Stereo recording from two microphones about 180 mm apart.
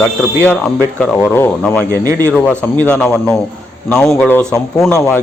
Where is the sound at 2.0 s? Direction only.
20° right (ahead or behind).